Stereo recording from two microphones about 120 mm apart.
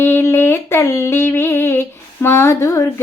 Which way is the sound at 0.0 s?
20° left (ahead or behind).